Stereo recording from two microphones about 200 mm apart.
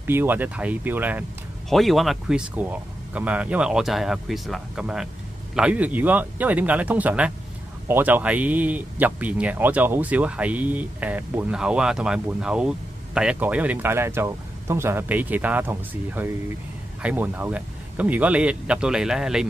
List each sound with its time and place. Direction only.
0.0 s speech: 10° right (ahead or behind)